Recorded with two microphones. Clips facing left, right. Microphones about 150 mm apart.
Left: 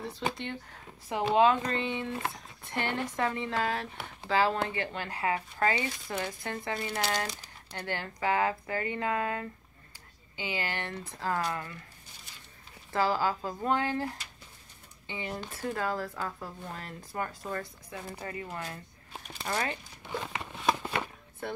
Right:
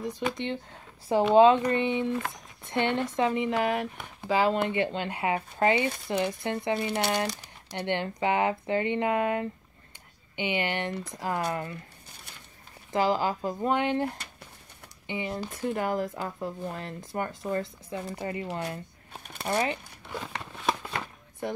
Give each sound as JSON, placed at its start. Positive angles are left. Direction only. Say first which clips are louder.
{"t": 0.0, "sound": "speech", "louder": "right 4 dB", "side_deg": -20}
{"t": 1.0, "sound": "speech", "louder": "right 6 dB", "side_deg": -30}
{"t": 12.9, "sound": "speech", "louder": "right 3 dB", "side_deg": -20}
{"t": 20.1, "sound": "a sound", "louder": "left 1 dB", "side_deg": 0}